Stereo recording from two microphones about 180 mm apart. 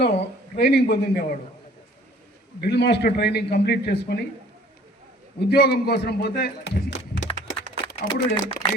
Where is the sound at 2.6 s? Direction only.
65° left (ahead or behind).